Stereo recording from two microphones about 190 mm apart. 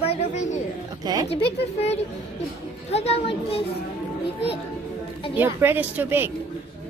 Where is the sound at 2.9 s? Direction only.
35° left (ahead or behind).